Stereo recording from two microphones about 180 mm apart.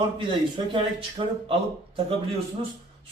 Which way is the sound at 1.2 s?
30° right (ahead or behind).